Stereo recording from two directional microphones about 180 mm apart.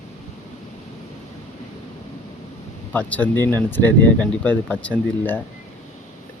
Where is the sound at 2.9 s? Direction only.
10° left (ahead or behind).